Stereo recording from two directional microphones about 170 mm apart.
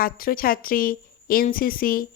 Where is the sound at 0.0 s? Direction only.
60° left (ahead or behind).